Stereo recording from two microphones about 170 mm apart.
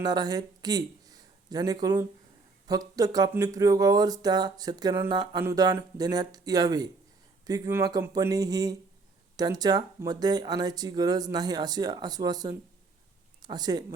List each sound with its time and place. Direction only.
0.0 s speech: 25° right (ahead or behind)